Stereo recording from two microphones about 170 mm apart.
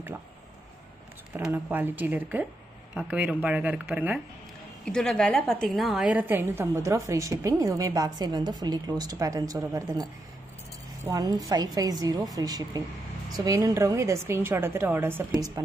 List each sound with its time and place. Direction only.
1.3 s a woman's voice: 10° right (ahead or behind)
4.8 s a woman's voice: 5° left (ahead or behind); by 10.0 s 20° right (ahead or behind)
11.1 s a woman's voice: 20° right (ahead or behind)